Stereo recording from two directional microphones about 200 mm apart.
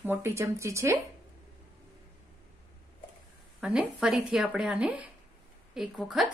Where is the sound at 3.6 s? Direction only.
5° right (ahead or behind).